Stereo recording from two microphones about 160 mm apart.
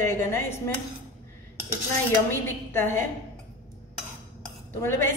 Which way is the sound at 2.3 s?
15° left (ahead or behind).